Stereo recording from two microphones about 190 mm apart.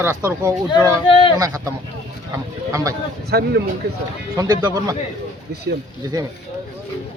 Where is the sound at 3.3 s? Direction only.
60° right (ahead or behind).